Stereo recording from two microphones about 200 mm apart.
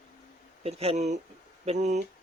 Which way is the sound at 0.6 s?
30° right (ahead or behind).